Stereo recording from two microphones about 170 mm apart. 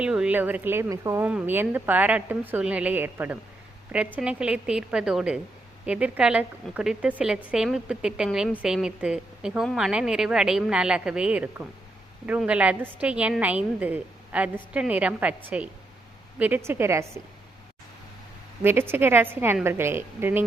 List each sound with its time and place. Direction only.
0.0 s a woman's voice: 5° right (ahead or behind)
18.6 s a woman's voice: 15° right (ahead or behind)